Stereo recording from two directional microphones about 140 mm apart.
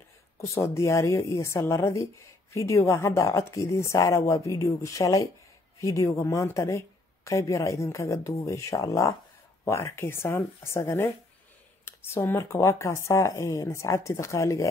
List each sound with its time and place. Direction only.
0.6 s speech: 20° left (ahead or behind)
11.8 s speech: 15° left (ahead or behind)